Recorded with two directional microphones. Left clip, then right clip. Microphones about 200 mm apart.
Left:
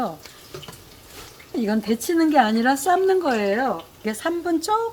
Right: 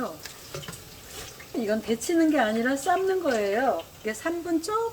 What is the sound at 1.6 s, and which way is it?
Speech, 60° left (ahead or behind).